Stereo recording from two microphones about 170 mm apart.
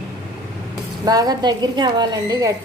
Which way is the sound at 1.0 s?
20° right (ahead or behind).